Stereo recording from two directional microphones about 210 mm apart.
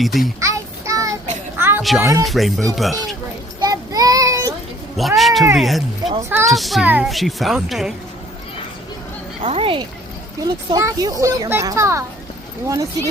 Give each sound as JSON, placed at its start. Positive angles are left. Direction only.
{"t": 0.0, "sound": "a child's voice", "side_deg": 0}
{"t": 0.3, "sound": "child singing", "side_deg": -15}
{"t": 1.5, "sound": "a sound", "side_deg": -10}
{"t": 1.8, "sound": "a child's voice", "side_deg": 0}
{"t": 3.6, "sound": "child singing", "side_deg": -15}
{"t": 4.9, "sound": "a child's voice", "side_deg": 0}
{"t": 6.1, "sound": "a child's voice", "side_deg": -15}
{"t": 6.5, "sound": "a child's voice", "side_deg": 0}
{"t": 9.4, "sound": "a child's voice", "side_deg": -25}